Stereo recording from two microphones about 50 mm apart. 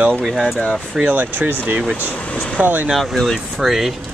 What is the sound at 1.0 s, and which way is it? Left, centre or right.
Speech, right.